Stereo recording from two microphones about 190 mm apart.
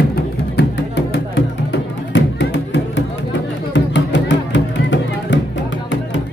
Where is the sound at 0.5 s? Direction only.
65° left (ahead or behind).